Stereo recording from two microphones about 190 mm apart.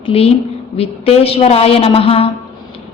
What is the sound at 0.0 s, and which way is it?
A woman's voice, 30° left (ahead or behind).